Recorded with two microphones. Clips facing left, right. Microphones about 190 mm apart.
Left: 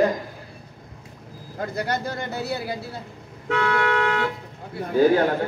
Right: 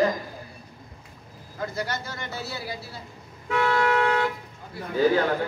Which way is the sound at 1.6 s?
60° left (ahead or behind).